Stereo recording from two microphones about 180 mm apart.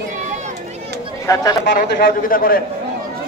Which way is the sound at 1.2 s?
15° left (ahead or behind).